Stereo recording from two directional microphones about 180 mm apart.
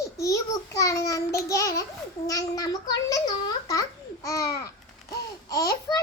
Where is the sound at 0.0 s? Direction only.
15° left (ahead or behind).